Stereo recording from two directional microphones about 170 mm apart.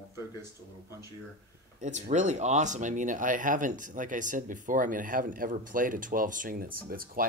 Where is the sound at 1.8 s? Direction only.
45° right (ahead or behind).